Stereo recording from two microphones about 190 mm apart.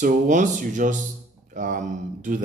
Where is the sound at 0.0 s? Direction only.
40° right (ahead or behind).